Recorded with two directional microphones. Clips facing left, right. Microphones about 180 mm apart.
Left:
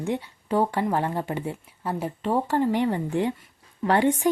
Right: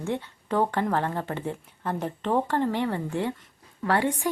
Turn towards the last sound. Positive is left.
turn(degrees=20)  # may be behind; listen again after turning